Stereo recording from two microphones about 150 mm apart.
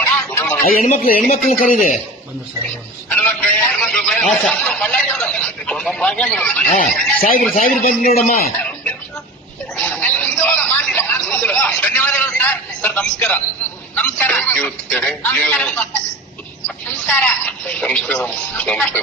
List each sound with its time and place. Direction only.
0.3 s a sound: 10° left (ahead or behind)
0.6 s a man's voice: 75° left (ahead or behind)
3.1 s a man's voice: 10° left (ahead or behind)
7.2 s a man's voice: 75° left (ahead or behind)
8.6 s a sound: 10° left (ahead or behind)
9.7 s speech: 5° left (ahead or behind)